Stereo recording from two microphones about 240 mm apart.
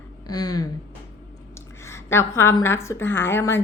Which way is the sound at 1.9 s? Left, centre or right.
Centre.